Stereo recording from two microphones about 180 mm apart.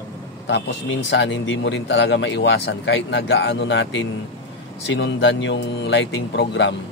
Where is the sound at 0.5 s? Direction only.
85° left.